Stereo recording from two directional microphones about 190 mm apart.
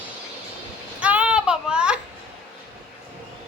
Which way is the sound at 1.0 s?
5° right (ahead or behind).